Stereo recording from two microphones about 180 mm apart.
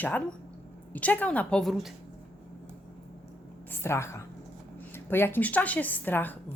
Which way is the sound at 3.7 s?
15° left (ahead or behind).